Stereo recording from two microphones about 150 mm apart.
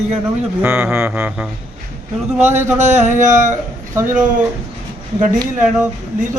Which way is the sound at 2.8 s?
50° right (ahead or behind).